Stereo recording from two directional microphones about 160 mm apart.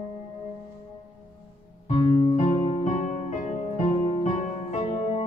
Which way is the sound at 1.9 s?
45° left (ahead or behind).